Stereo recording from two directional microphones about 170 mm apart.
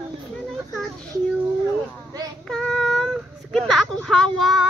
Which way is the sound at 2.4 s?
5° left (ahead or behind).